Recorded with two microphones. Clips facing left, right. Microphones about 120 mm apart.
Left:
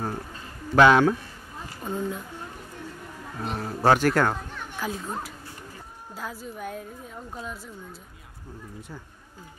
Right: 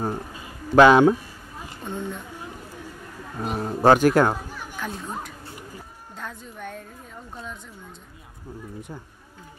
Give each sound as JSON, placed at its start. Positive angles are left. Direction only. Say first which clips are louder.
{"t": 0.0, "sound": "a sound", "louder": "right 3 dB", "side_deg": -15}
{"t": 1.9, "sound": "a woman's voice", "louder": "left 2 dB", "side_deg": 5}
{"t": 3.6, "sound": "a child's voice", "louder": "right 4 dB", "side_deg": -20}
{"t": 4.5, "sound": "children playing", "louder": "left 1 dB", "side_deg": -5}
{"t": 6.1, "sound": "a woman's voice", "louder": "left 2 dB", "side_deg": 5}